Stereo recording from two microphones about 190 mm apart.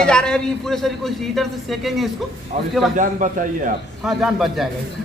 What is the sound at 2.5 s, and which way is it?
A man's voice, 40° right (ahead or behind).